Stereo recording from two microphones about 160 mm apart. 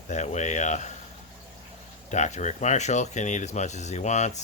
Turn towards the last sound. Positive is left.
turn(degrees=45)  # may be behind; listen again after turning